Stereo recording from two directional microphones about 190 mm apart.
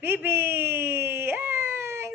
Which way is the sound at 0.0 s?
10° right (ahead or behind).